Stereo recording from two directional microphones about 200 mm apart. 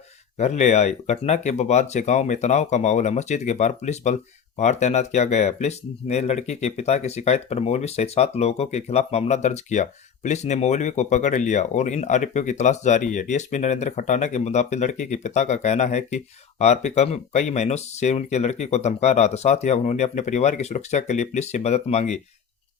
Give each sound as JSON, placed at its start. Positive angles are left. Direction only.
{"t": 0.3, "sound": "speech", "side_deg": 35}